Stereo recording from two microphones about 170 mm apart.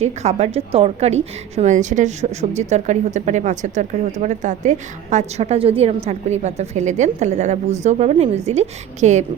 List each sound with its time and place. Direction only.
0.0 s a woman's voice: 40° right (ahead or behind)